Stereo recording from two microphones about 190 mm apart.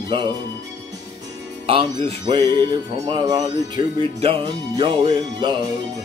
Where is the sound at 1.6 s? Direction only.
30° right (ahead or behind).